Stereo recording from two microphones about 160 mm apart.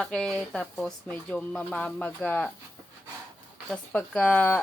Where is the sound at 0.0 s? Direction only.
Centre (ahead or behind).